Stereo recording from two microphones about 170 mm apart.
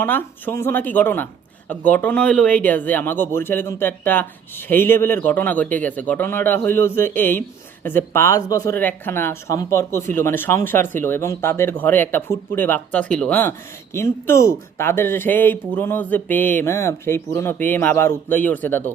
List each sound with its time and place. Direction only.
0.0 s speech: 10° left (ahead or behind)